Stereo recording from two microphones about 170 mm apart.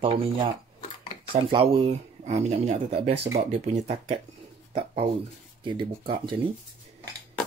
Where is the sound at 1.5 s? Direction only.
30° right (ahead or behind).